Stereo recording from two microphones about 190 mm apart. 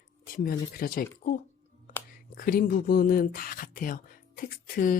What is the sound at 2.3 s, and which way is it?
A woman's voice, 50° left (ahead or behind).